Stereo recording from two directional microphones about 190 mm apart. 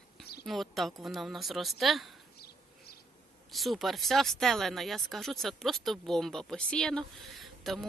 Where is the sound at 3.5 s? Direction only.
Centre (ahead or behind).